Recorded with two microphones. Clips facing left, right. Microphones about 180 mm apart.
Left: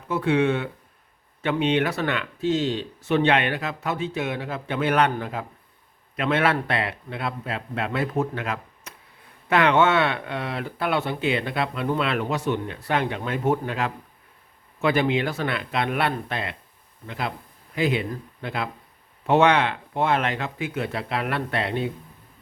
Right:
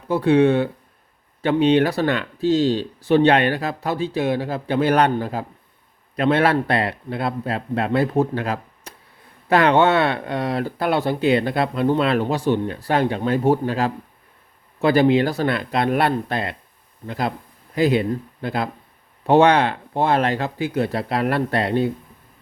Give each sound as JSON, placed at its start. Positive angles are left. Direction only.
{"t": 0.1, "sound": "speech", "side_deg": -35}